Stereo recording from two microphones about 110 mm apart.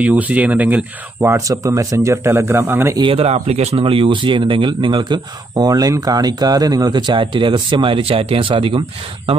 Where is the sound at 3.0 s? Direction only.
65° right (ahead or behind).